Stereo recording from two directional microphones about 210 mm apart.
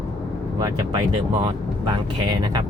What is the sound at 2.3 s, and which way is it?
Speech, 20° right (ahead or behind).